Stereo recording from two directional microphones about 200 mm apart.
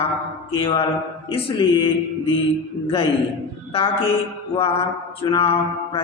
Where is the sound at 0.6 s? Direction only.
25° left (ahead or behind).